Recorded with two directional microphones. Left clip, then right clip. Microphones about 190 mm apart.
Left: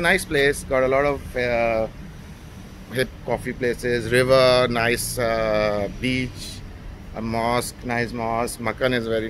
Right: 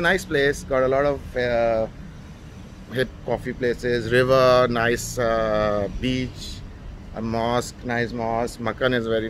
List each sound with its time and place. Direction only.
0.0 s speech: 15° right (ahead or behind)
2.9 s speech: 15° right (ahead or behind)